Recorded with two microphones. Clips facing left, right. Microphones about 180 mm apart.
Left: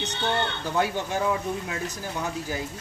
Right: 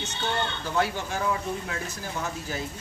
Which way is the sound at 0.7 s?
15° left (ahead or behind).